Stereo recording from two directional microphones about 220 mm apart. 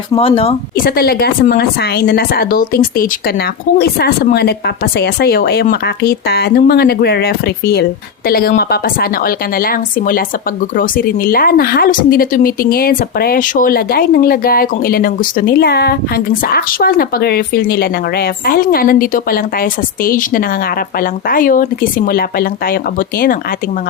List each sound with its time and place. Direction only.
0.1 s speech: 25° left (ahead or behind)
0.8 s a woman's voice: 45° left (ahead or behind)